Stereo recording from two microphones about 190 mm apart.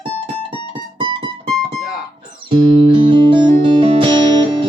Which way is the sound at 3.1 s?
25° right (ahead or behind).